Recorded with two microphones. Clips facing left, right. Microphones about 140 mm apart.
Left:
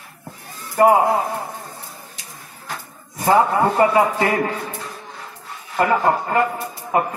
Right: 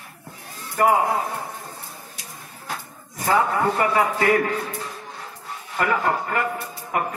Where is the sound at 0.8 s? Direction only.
25° left (ahead or behind).